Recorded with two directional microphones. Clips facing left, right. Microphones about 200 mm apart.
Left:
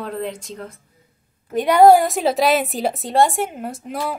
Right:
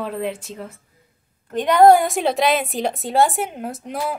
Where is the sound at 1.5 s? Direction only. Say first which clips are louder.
Left 1 dB; 10° left (ahead or behind).